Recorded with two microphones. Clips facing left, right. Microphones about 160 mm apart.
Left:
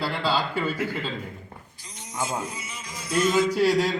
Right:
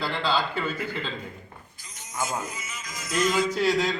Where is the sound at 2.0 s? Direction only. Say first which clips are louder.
Left 1 dB; 30° left (ahead or behind).